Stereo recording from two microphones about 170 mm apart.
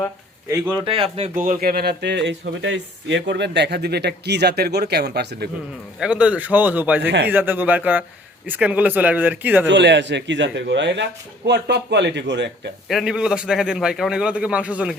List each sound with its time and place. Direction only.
0.5 s speech: 10° right (ahead or behind)
0.9 s speech: 35° right (ahead or behind)
1.5 s speech: 65° right (ahead or behind)
6.0 s speech: 5° right (ahead or behind)
9.6 s a man's voice: 90° right
12.9 s a man's voice: centre (ahead or behind)